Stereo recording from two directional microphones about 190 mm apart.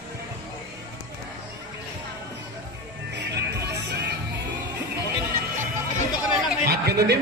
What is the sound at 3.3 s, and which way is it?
Music, 60° right (ahead or behind).